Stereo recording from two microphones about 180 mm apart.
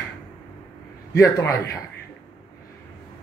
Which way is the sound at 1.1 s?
15° left (ahead or behind).